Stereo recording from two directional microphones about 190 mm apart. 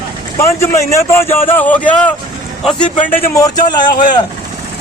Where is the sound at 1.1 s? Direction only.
10° left (ahead or behind).